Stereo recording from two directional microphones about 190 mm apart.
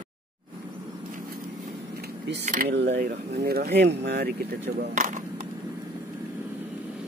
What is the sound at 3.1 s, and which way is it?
Speech, 55° right (ahead or behind).